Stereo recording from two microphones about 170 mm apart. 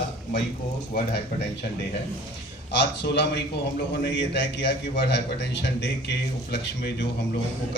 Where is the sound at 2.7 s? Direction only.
90° left.